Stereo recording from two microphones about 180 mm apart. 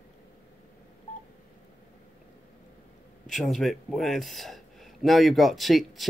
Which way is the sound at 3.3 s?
Centre (ahead or behind).